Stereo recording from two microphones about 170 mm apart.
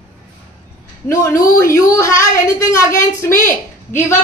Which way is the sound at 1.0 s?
15° left (ahead or behind).